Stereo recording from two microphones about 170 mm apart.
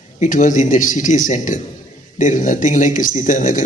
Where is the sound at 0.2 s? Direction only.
50° left (ahead or behind).